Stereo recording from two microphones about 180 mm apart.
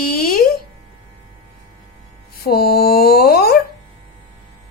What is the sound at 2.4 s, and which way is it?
Mantra, 60° left (ahead or behind).